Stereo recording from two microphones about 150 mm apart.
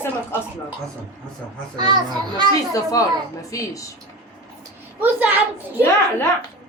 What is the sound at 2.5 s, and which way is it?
A man's voice, 25° left (ahead or behind).